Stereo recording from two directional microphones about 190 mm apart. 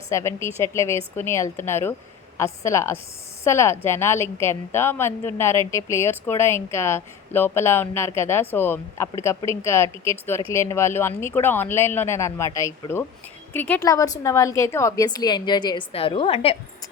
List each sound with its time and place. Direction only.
0.1 s a woman's voice: 15° left (ahead or behind); by 16.6 s 30° left (ahead or behind)